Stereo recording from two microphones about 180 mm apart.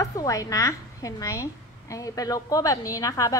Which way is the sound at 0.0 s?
20° left (ahead or behind).